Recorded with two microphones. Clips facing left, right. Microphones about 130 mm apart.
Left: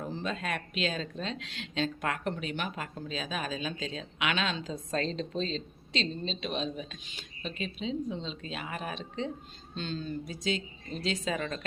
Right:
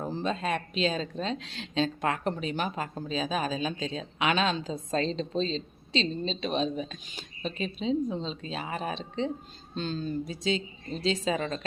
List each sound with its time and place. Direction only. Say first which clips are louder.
0.0 s speech: right 4 dB; 35° right (ahead or behind)